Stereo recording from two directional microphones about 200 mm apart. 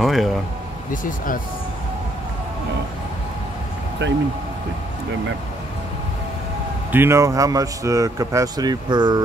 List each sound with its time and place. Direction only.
0.0 s speech: centre (ahead or behind)
1.0 s speech: 45° left (ahead or behind)
4.0 s speech: 65° right (ahead or behind)
6.9 s speech: 10° right (ahead or behind)